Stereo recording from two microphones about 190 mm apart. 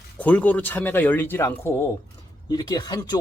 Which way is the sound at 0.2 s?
10° left (ahead or behind).